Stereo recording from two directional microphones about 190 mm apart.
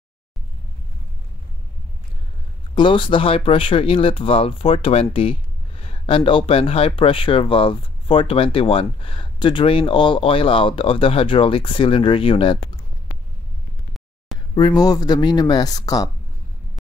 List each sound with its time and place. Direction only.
2.7 s speech: 25° left (ahead or behind)
14.5 s speech: 25° left (ahead or behind)